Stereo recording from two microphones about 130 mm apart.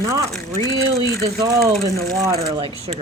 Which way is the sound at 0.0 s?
25° right (ahead or behind).